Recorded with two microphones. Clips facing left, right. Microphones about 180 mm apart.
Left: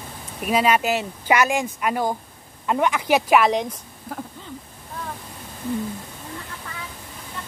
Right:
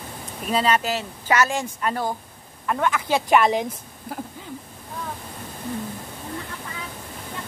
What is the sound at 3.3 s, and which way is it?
Speech, centre (ahead or behind).